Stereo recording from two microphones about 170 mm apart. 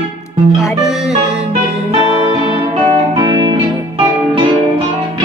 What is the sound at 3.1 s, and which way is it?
Music, 30° right (ahead or behind).